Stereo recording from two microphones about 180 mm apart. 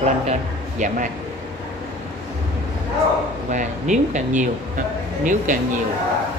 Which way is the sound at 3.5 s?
45° right (ahead or behind).